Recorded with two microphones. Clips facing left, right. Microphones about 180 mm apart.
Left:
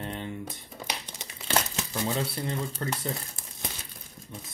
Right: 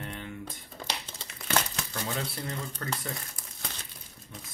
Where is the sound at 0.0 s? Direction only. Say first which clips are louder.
Left 4 dB; 30° left (ahead or behind).